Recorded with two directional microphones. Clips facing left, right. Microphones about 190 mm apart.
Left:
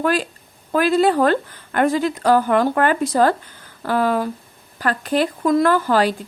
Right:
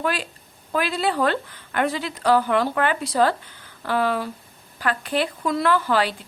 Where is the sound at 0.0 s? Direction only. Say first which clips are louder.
Left 6 dB; 45° left (ahead or behind).